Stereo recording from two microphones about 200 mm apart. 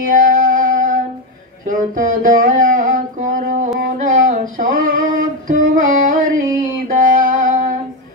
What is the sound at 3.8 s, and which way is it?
Music, 40° right (ahead or behind).